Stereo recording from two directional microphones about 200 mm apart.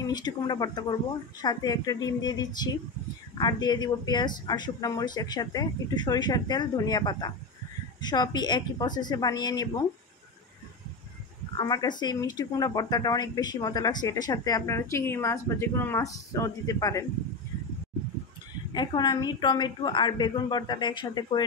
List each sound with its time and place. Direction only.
0.0 s speech: 20° left (ahead or behind)
11.5 s speech: 20° left (ahead or behind)
18.7 s speech: 20° left (ahead or behind)